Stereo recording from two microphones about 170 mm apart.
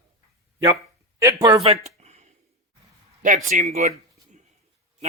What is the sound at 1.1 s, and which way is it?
Speech, 20° right (ahead or behind).